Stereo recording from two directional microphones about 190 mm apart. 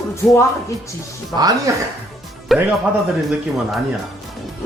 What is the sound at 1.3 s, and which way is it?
Speech, 20° right (ahead or behind).